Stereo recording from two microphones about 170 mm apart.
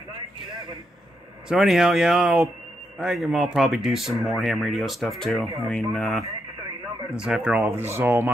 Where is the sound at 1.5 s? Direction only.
Centre (ahead or behind).